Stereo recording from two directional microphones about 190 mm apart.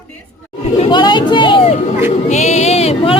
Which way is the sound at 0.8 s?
25° left (ahead or behind).